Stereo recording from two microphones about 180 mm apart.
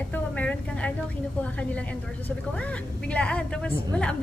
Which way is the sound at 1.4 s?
5° left (ahead or behind).